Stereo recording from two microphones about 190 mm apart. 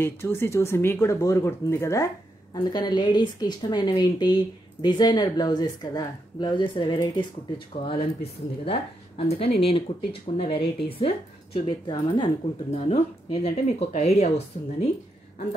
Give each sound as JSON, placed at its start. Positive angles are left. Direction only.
{"t": 0.0, "sound": "a woman's voice", "side_deg": 10}